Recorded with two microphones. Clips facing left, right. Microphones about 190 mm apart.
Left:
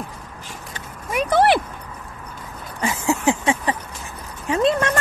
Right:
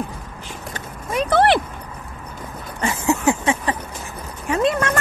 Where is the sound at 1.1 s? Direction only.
10° left (ahead or behind).